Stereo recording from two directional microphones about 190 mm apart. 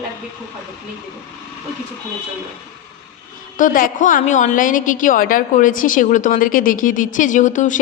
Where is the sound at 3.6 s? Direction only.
45° left (ahead or behind).